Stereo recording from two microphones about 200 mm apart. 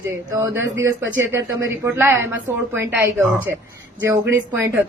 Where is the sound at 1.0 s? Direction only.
65° right (ahead or behind).